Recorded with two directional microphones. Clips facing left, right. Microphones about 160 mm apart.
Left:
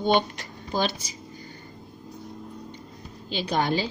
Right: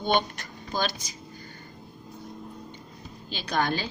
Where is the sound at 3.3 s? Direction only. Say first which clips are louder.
Left 3 dB; 25° left (ahead or behind).